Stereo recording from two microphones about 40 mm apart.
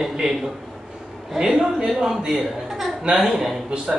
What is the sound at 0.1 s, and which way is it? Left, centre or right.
A man's voice, centre.